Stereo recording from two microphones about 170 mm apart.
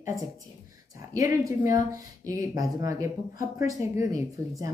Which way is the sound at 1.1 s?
20° right (ahead or behind).